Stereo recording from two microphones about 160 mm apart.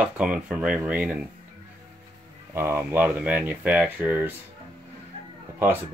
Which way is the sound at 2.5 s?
15° right (ahead or behind).